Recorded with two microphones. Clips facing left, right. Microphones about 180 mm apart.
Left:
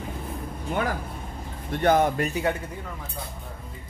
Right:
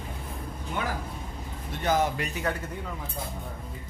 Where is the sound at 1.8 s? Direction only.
55° left (ahead or behind).